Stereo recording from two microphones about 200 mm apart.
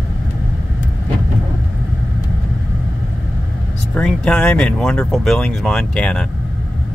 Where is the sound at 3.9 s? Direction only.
5° left (ahead or behind).